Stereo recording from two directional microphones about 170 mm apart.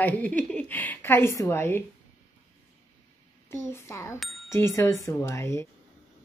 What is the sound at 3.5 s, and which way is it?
Speech, 15° left (ahead or behind).